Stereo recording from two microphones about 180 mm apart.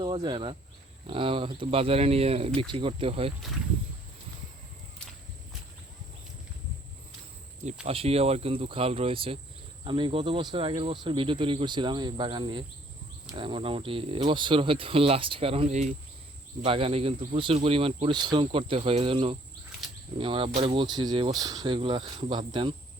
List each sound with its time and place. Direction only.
0.0 s speech: 25° right (ahead or behind)
7.9 s speech: 35° right (ahead or behind)
16.6 s speech: 30° right (ahead or behind)